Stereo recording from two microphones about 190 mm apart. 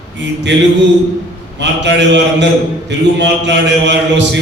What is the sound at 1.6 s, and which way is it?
A man's voice, 70° right (ahead or behind).